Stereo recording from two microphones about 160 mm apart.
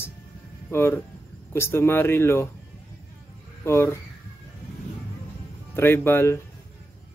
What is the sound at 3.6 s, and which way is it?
Speech, 15° left (ahead or behind).